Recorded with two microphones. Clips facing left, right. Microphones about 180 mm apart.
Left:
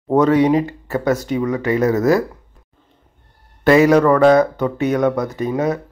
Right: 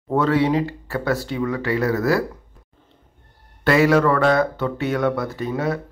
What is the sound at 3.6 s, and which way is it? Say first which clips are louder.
A man's voice: left 5 dB; 20° left (ahead or behind).